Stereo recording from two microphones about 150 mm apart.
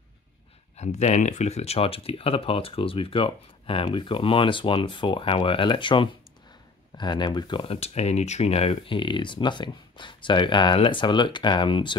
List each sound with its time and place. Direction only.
0.7 s speech: 50° left (ahead or behind); by 12.0 s 30° left (ahead or behind)